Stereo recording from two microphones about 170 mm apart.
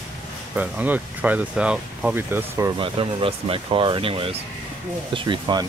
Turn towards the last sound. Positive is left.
turn(degrees=-25)  # may be behind; listen again after turning